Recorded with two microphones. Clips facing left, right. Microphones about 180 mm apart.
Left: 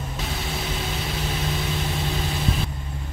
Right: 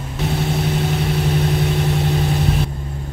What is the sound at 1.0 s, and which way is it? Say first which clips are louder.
Vehicle: right 9 dB; 60° right (ahead or behind).